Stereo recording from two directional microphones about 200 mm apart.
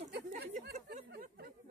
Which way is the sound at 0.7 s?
45° right (ahead or behind).